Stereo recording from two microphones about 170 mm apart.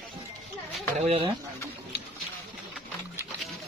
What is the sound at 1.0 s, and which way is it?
Speech, 40° right (ahead or behind).